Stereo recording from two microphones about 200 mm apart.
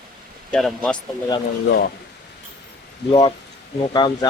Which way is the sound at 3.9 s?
20° left (ahead or behind).